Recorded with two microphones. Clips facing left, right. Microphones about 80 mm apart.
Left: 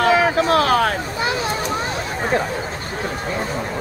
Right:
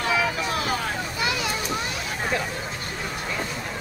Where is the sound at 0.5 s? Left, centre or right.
Left.